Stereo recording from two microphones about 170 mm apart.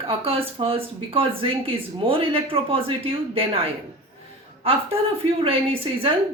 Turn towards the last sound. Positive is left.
turn(degrees=-30)  # may be behind; listen again after turning